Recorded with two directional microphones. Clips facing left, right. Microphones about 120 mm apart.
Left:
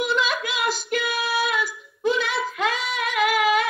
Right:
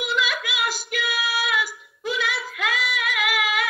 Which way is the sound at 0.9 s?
35° left (ahead or behind).